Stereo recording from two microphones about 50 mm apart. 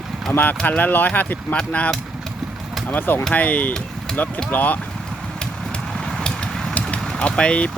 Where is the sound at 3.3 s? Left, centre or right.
Left.